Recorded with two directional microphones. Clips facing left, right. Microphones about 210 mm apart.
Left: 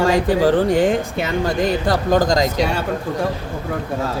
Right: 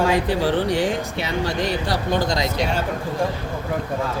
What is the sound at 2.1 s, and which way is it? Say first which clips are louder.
Speech: left 6 dB; 90° left.